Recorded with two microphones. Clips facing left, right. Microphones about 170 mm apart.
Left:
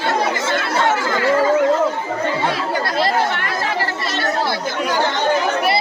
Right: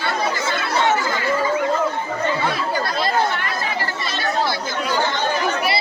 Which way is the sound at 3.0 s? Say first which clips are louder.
Left 3 dB; 80° left.